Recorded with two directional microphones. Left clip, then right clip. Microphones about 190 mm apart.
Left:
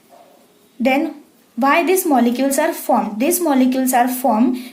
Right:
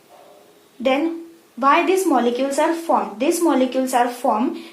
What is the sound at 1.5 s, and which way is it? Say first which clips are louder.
A woman's voice: left 1 dB; 40° left (ahead or behind).